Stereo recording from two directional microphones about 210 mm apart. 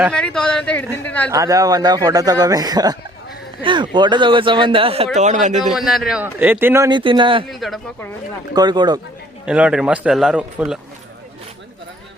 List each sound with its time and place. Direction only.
0.1 s a man's voice: 5° left (ahead or behind)
1.3 s speech: 15° right (ahead or behind); by 5.7 s 35° right (ahead or behind)
5.7 s speech: centre (ahead or behind); by 7.4 s 25° right (ahead or behind)
7.5 s a man's voice: centre (ahead or behind)
8.5 s speech: 20° right (ahead or behind)
9.5 s a man's voice: 5° right (ahead or behind)